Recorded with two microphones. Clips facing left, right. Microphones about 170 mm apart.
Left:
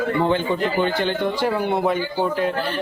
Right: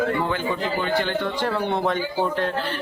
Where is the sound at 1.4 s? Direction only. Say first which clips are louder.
Left 3 dB; 10° left (ahead or behind).